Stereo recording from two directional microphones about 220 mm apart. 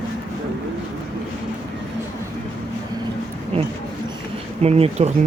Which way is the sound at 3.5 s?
25° right (ahead or behind).